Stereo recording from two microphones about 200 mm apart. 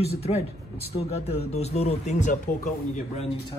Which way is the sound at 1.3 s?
30° left (ahead or behind).